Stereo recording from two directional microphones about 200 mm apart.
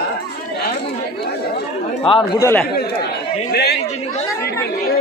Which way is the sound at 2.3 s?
15° left (ahead or behind).